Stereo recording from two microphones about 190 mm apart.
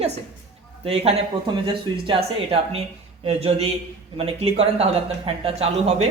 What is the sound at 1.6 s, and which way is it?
A man's voice, 25° right (ahead or behind).